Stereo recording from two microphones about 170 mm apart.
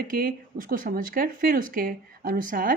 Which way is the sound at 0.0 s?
60° right (ahead or behind).